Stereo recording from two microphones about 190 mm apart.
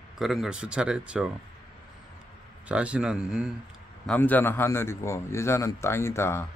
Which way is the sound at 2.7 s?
5° right (ahead or behind).